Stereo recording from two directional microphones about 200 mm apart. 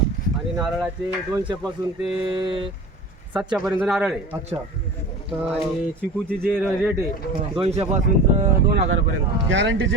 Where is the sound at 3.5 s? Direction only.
Centre (ahead or behind).